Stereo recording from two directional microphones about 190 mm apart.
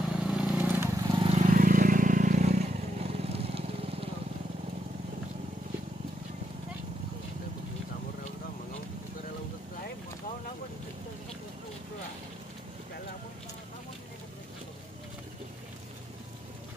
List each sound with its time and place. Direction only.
0.2 s vehicle: 5° right (ahead or behind); by 1.3 s 20° right (ahead or behind)
1.3 s vehicle: 40° right (ahead or behind)